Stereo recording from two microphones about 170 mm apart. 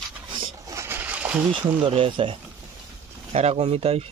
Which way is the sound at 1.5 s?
30° right (ahead or behind).